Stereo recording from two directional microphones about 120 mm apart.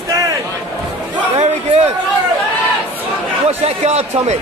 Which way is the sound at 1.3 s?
70° right (ahead or behind).